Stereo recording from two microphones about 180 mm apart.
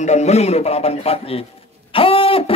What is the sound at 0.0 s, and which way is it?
Speech, 40° left (ahead or behind).